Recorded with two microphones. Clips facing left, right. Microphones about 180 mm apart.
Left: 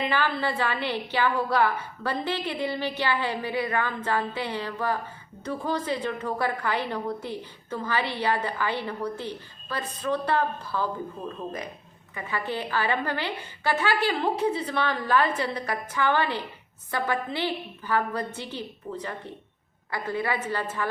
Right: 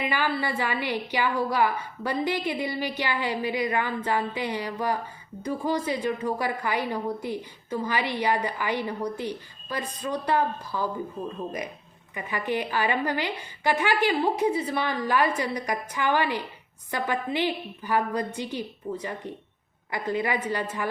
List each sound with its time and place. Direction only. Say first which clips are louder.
0.0 s a woman's voice: left 1 dB; 10° right (ahead or behind)
12.1 s a woman's voice: right 2 dB; 15° right (ahead or behind)